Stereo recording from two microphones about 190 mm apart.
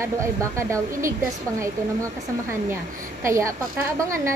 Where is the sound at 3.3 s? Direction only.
15° right (ahead or behind).